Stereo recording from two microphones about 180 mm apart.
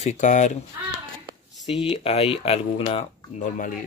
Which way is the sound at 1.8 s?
35° left (ahead or behind).